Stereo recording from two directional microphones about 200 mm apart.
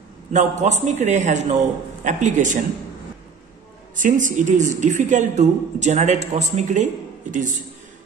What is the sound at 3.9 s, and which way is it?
A man's voice, 40° right (ahead or behind).